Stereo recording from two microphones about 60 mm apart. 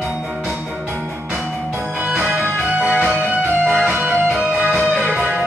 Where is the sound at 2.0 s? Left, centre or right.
Right.